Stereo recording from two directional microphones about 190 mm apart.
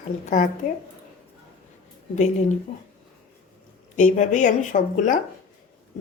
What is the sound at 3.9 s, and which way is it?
A woman's voice, 40° left (ahead or behind).